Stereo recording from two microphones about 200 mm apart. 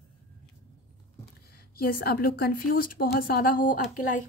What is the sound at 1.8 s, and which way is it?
A woman's voice, 50° left (ahead or behind).